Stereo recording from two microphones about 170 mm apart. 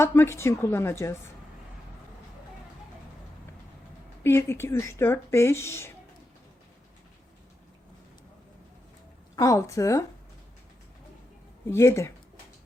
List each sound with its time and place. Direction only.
0.0 s speech: 15° left (ahead or behind)
4.2 s speech: 15° left (ahead or behind)
9.3 s a woman's voice: 20° left (ahead or behind)
11.7 s speech: 15° left (ahead or behind)